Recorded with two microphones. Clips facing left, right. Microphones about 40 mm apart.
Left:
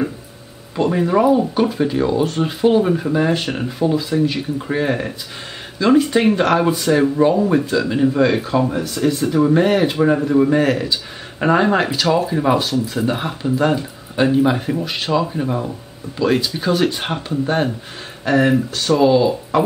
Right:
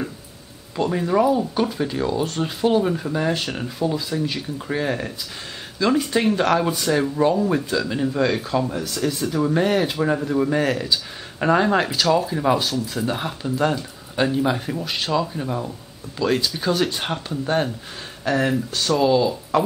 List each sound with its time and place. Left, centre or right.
0.7 s speech: centre